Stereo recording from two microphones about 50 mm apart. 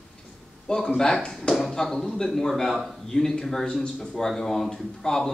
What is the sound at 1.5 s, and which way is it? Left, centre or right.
A man's voice, centre.